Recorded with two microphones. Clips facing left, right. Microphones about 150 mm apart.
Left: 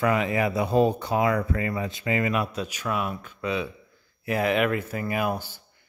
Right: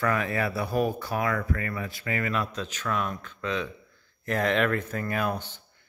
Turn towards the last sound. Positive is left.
turn(degrees=10)  # may be behind; listen again after turning